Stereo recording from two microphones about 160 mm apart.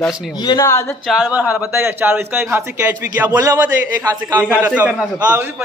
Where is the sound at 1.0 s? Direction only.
5° right (ahead or behind).